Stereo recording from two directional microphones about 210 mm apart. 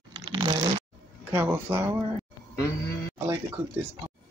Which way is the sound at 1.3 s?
10° right (ahead or behind).